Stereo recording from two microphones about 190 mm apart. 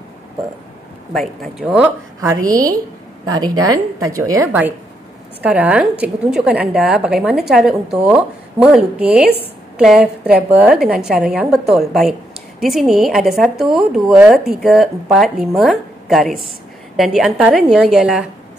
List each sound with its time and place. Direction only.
1.1 s a woman's voice: centre (ahead or behind)
2.4 s a woman's voice: 20° right (ahead or behind)